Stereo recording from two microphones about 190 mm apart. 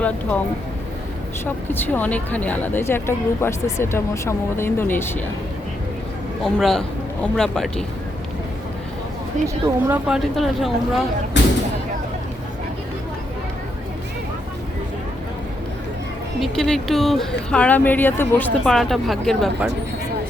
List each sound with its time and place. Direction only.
0.0 s speech: 5° left (ahead or behind)
1.5 s speech: 10° left (ahead or behind)
6.4 s speech: centre (ahead or behind)
9.8 s speech: 10° right (ahead or behind)
11.3 s speech: 70° left (ahead or behind)
16.4 s speech: centre (ahead or behind)